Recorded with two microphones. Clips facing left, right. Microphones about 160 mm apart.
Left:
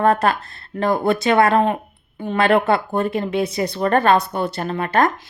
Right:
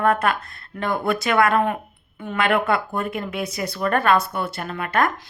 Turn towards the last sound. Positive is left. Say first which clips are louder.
# left 4 dB
turn(degrees=30)  # may be behind; listen again after turning